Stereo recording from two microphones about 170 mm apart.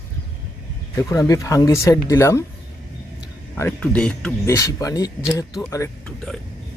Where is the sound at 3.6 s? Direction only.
10° left (ahead or behind).